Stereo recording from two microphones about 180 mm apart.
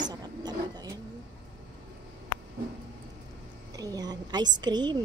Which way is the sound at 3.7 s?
20° right (ahead or behind).